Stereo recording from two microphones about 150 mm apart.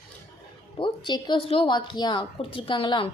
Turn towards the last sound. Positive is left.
turn(degrees=35)  # may be behind; listen again after turning